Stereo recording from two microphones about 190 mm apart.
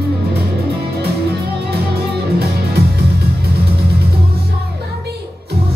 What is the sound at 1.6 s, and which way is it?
Music, 55° right (ahead or behind).